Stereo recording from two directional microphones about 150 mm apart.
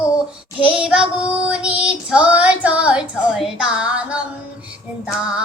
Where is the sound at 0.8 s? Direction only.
5° right (ahead or behind).